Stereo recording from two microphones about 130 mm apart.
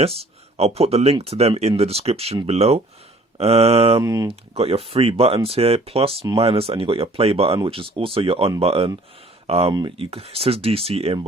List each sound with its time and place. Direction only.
0.0 s speech: 50° right (ahead or behind)
4.0 s speech: 25° right (ahead or behind)
4.3 s speech: 50° right (ahead or behind)